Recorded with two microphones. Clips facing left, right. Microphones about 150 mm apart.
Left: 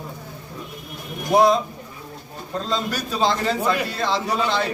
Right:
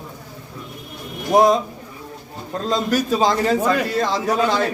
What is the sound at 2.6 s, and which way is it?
A man's voice, 40° right (ahead or behind).